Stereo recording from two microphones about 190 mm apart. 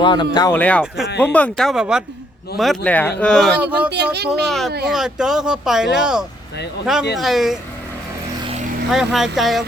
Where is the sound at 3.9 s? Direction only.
60° right (ahead or behind).